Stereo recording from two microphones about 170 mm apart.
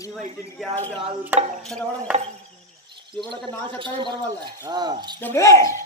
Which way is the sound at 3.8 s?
30° right (ahead or behind).